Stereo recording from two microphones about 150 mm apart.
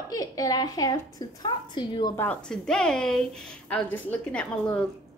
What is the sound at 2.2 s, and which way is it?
A woman's voice, 5° left (ahead or behind).